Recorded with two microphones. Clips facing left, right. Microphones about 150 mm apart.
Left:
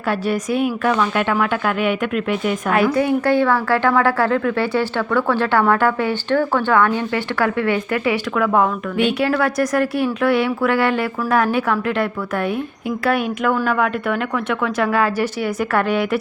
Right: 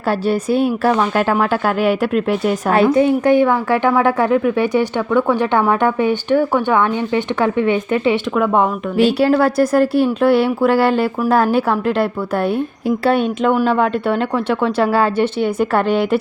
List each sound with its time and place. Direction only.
0.1 s speech: 30° right (ahead or behind)
9.0 s a woman's voice: 35° right (ahead or behind)